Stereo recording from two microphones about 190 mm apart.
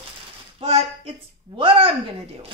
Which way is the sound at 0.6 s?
35° right (ahead or behind).